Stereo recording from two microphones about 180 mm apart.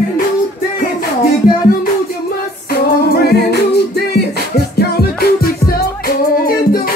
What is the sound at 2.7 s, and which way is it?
A capella, 60° left (ahead or behind).